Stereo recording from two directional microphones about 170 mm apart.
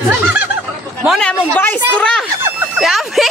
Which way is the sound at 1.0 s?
Centre (ahead or behind).